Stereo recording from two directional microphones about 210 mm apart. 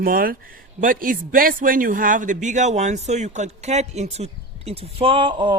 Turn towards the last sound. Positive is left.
turn(degrees=-20)  # may be behind; listen again after turning